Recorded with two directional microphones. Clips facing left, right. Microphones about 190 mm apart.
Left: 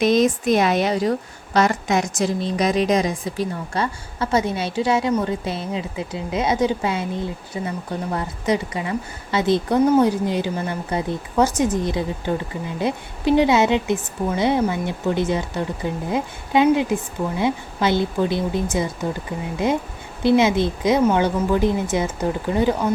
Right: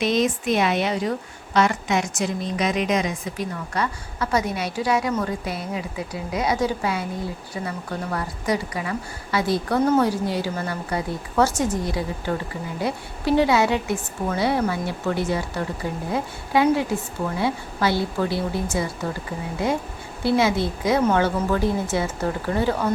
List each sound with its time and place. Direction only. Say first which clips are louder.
0.0 s a woman's voice: left 4 dB; 45° left (ahead or behind); by 18.9 s 20° left (ahead or behind)
20.2 s a woman's voice: left 4 dB; 20° left (ahead or behind)